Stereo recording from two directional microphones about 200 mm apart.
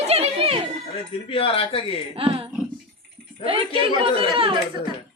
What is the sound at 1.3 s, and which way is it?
Speech, 25° left (ahead or behind).